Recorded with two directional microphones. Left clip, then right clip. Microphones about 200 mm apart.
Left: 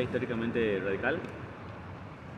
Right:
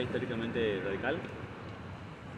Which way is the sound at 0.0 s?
60° left (ahead or behind).